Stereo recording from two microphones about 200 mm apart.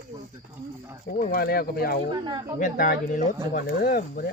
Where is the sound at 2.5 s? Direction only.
45° left (ahead or behind).